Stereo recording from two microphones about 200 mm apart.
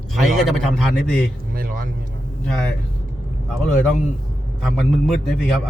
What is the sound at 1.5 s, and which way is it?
Vehicle, 45° right (ahead or behind).